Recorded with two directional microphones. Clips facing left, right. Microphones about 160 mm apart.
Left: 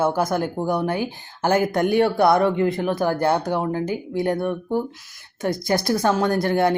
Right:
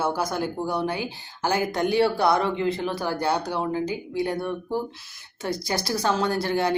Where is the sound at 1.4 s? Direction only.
50° left (ahead or behind).